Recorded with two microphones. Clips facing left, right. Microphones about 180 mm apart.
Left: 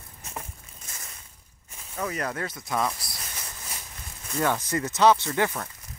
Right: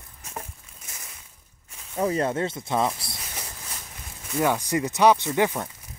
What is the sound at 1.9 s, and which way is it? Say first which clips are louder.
Speech: right 7 dB; 30° right (ahead or behind).